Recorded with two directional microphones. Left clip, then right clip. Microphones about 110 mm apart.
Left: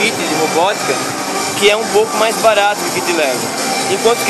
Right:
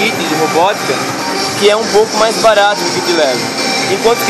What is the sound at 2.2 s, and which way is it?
Speech, 35° right (ahead or behind).